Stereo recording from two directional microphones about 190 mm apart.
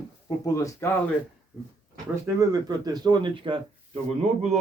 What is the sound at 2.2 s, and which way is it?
Speech, 15° right (ahead or behind).